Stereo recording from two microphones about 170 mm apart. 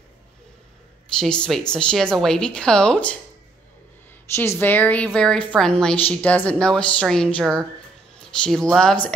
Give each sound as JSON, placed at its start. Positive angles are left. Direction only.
{"t": 1.2, "sound": "speech", "side_deg": 5}
{"t": 4.4, "sound": "a woman's voice", "side_deg": 10}